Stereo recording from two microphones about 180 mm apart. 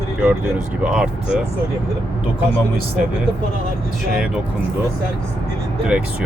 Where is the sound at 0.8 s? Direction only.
5° right (ahead or behind).